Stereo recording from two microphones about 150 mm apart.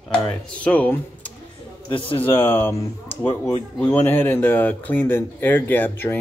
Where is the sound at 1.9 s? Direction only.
35° left (ahead or behind).